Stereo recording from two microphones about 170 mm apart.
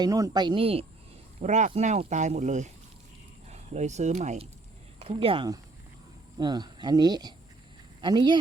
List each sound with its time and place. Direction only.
0.0 s speech: 20° right (ahead or behind)
1.4 s speech: 45° right (ahead or behind); by 8.4 s 25° right (ahead or behind)